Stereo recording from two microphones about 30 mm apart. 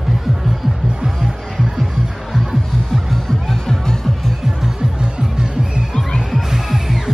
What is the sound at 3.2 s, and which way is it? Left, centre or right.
Music, centre.